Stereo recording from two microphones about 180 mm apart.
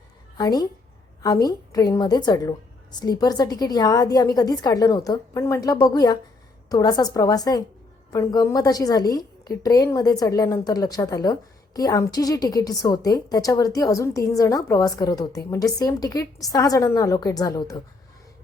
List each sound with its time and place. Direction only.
0.3 s a woman's voice: 20° left (ahead or behind)